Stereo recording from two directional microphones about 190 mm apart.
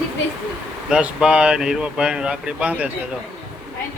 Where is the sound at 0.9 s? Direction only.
5° right (ahead or behind).